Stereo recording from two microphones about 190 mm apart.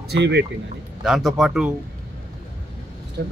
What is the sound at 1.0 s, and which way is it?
Speech, centre (ahead or behind).